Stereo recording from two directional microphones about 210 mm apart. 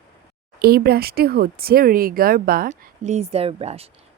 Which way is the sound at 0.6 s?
50° right (ahead or behind).